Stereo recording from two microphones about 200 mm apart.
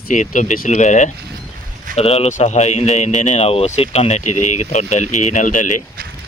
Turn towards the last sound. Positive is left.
turn(degrees=40)  # may be behind; listen again after turning